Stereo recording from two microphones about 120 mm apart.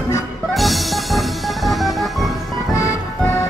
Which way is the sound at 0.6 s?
Centre (ahead or behind).